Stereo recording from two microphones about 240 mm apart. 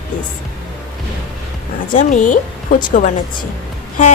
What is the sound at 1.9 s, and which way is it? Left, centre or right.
Speech, left.